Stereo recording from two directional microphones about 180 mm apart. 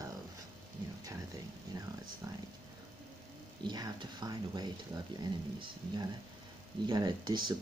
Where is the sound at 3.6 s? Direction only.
20° right (ahead or behind).